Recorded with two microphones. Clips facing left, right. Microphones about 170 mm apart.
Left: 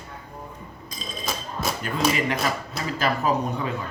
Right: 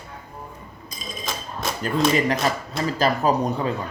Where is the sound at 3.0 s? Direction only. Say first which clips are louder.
Right 2 dB; 35° right (ahead or behind).